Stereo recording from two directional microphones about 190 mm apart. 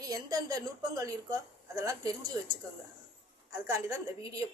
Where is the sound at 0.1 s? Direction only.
20° right (ahead or behind).